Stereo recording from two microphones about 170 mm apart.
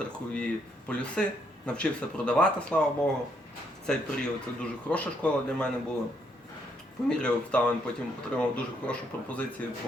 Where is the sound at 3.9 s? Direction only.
5° left (ahead or behind).